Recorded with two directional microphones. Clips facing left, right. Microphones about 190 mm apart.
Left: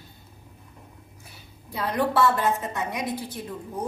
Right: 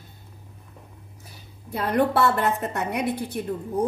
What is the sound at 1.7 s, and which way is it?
A woman's voice, 55° right (ahead or behind).